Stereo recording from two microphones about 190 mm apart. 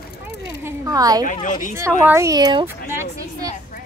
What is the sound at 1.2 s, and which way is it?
Speech, 45° left (ahead or behind).